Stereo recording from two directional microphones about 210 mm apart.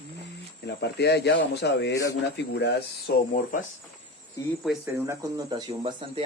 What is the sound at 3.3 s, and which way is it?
Speech, 40° left (ahead or behind).